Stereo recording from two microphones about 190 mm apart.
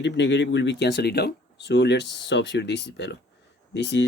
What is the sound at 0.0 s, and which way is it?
Speech, 65° left (ahead or behind).